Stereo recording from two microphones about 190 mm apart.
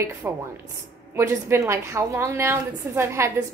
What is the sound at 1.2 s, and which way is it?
A woman's voice, 15° right (ahead or behind).